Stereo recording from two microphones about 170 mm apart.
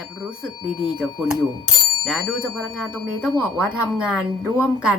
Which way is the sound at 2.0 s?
5° right (ahead or behind).